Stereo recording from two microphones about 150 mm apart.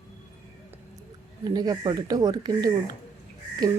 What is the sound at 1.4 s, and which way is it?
A woman's voice, 25° right (ahead or behind).